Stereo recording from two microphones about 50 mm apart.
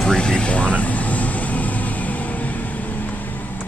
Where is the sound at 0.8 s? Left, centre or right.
Left.